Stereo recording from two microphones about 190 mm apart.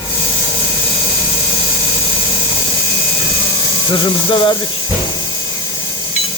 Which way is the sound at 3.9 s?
25° left (ahead or behind).